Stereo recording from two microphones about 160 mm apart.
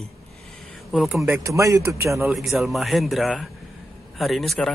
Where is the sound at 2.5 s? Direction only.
Centre (ahead or behind).